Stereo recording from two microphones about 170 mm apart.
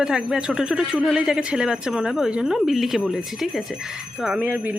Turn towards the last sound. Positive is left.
turn(degrees=-10)  # may be behind; listen again after turning